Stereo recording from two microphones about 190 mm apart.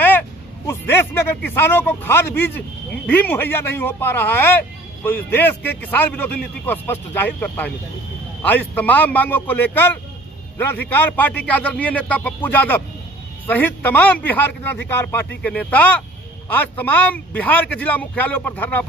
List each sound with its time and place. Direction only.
0.7 s a man's voice: 10° left (ahead or behind)